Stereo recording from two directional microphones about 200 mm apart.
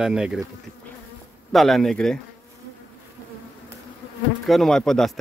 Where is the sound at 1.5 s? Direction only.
Centre (ahead or behind).